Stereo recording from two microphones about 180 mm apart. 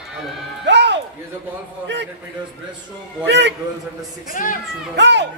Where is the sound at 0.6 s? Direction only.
70° right (ahead or behind).